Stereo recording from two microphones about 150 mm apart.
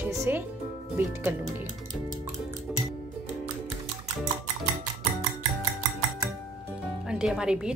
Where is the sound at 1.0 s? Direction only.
15° right (ahead or behind).